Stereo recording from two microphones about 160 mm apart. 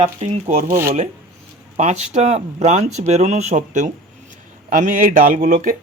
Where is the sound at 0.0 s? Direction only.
45° right (ahead or behind).